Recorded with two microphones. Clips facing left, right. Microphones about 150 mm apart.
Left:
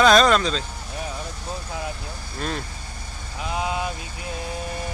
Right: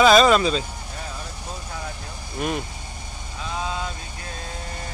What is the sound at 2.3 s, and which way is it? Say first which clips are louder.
Speech: right 3 dB; 15° right (ahead or behind).